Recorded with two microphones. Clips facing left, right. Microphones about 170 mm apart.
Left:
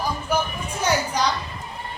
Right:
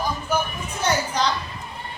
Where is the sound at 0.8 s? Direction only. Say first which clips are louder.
Even; 10° left (ahead or behind).